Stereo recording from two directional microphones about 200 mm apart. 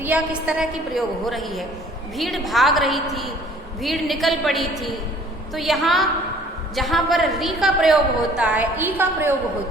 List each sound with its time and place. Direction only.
0.0 s a woman's voice: 5° right (ahead or behind)